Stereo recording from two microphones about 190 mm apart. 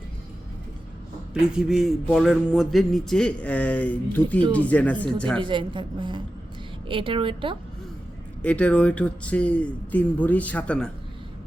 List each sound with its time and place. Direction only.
1.3 s a sound: 5° right (ahead or behind)
4.5 s speech: 10° left (ahead or behind)
5.4 s a woman's voice: 25° right (ahead or behind)
8.4 s speech: 5° left (ahead or behind)